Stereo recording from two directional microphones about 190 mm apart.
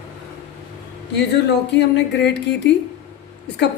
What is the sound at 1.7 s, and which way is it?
Speech, 65° left (ahead or behind).